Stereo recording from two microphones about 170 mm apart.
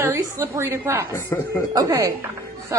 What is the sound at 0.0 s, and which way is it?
A woman's voice, 15° right (ahead or behind).